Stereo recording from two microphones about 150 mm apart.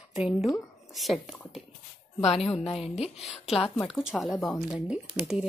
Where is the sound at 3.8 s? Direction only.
Centre (ahead or behind).